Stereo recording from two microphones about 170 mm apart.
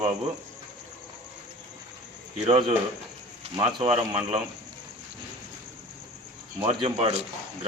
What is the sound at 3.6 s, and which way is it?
Speech, 35° right (ahead or behind).